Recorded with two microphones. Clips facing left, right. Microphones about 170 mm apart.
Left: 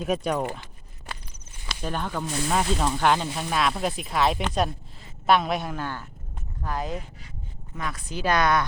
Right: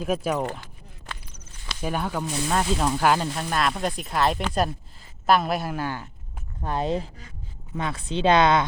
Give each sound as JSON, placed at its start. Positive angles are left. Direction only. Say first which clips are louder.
{"t": 0.0, "sound": "speech", "louder": "even", "side_deg": 0}
{"t": 1.8, "sound": "speech", "louder": "right 2 dB", "side_deg": -10}
{"t": 6.6, "sound": "speech", "louder": "right 5 dB", "side_deg": -30}